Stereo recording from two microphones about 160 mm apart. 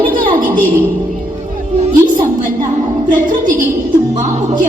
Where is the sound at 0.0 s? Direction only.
60° right (ahead or behind).